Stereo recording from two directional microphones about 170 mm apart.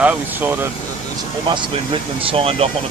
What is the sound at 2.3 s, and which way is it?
Speech, 35° right (ahead or behind).